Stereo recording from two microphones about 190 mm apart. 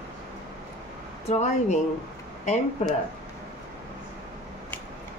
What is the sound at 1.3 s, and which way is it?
Speech, 35° left (ahead or behind).